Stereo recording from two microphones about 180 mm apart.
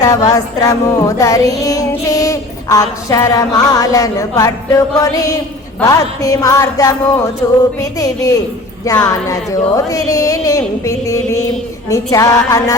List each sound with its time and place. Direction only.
0.0 s music: 20° left (ahead or behind)
8.8 s a woman's voice: 20° left (ahead or behind)
11.9 s music: 20° left (ahead or behind)